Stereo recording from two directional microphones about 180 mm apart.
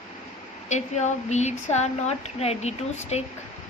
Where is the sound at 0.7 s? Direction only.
40° left (ahead or behind).